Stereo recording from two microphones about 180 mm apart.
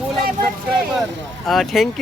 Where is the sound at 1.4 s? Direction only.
Centre (ahead or behind).